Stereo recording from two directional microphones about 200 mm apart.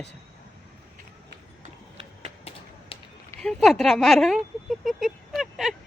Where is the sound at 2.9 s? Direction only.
25° left (ahead or behind).